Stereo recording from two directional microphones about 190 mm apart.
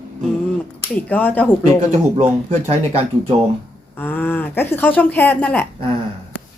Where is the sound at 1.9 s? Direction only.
35° right (ahead or behind).